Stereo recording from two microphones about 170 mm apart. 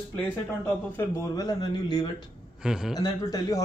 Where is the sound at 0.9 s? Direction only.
20° left (ahead or behind).